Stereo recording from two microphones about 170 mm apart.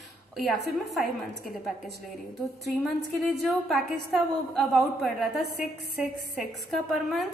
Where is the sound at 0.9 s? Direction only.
Centre (ahead or behind).